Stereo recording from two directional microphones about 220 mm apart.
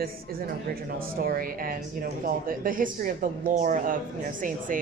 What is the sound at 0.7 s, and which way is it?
Speech, 40° right (ahead or behind).